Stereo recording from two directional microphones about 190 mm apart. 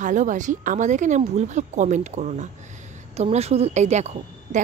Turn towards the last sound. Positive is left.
turn(degrees=-35)  # may be behind; listen again after turning